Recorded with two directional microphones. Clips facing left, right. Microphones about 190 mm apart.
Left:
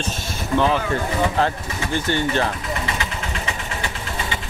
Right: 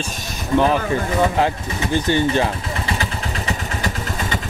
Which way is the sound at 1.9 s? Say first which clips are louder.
Right 3 dB; 15° right (ahead or behind).